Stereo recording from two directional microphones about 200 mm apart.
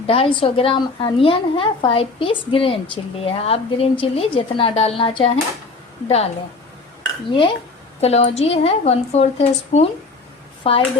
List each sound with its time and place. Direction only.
0.1 s a woman's voice: 25° left (ahead or behind)
7.3 s a woman's voice: 25° left (ahead or behind)